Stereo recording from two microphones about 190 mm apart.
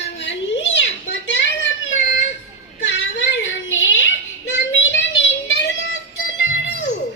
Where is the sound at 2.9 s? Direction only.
75° left (ahead or behind).